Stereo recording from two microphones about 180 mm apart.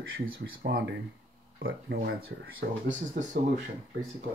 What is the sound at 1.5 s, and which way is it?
Speech, 60° right (ahead or behind).